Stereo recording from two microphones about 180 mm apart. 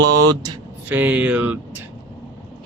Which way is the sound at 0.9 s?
10° right (ahead or behind).